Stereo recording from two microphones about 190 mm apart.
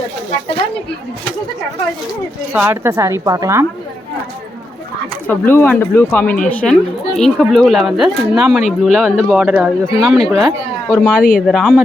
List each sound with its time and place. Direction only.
2.5 s speech: 10° right (ahead or behind)
5.3 s speech: 10° left (ahead or behind)
10.8 s speech: 15° left (ahead or behind)
11.2 s speech: 45° left (ahead or behind)
11.4 s speech: centre (ahead or behind)